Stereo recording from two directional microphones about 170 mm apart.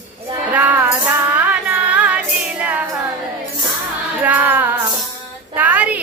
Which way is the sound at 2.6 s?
10° right (ahead or behind).